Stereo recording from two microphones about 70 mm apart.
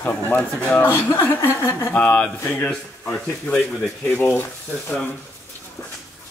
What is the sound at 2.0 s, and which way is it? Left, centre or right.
Speech, left.